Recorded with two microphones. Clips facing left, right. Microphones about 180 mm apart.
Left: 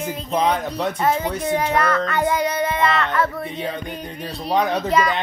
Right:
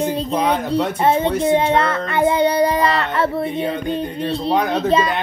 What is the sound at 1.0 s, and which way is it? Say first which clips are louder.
Speech: right 5 dB; 25° right (ahead or behind).